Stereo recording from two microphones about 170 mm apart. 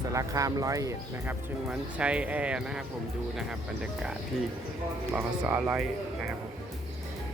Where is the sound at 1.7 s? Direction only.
5° right (ahead or behind).